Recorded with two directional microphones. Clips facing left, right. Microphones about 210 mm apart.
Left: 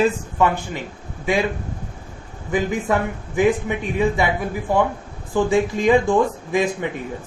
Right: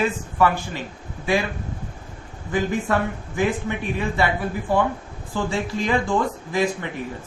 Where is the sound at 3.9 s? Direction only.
15° left (ahead or behind).